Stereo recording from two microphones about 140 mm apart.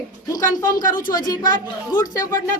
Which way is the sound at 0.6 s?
25° left (ahead or behind).